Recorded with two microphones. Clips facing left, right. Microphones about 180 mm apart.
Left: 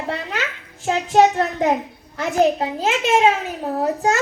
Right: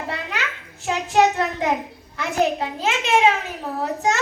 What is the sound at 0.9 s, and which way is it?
A woman's voice, 45° left (ahead or behind).